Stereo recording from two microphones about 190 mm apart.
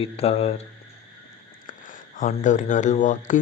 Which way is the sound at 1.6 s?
45° left (ahead or behind).